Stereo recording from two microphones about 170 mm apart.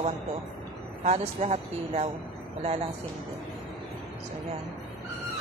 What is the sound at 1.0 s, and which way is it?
A woman's voice, 40° right (ahead or behind).